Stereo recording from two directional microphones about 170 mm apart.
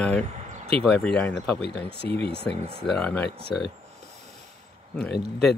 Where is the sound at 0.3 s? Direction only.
45° right (ahead or behind).